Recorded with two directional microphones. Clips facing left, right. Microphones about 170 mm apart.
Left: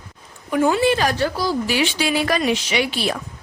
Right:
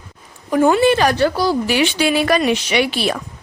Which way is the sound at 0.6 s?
60° right (ahead or behind).